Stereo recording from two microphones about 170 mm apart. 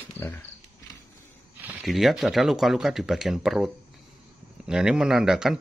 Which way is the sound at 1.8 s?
Centre (ahead or behind).